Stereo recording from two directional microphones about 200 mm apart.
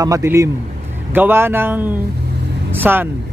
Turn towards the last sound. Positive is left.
turn(degrees=-10)  # may be behind; listen again after turning